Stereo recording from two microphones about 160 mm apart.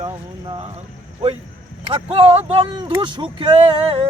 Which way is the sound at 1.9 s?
40° right (ahead or behind).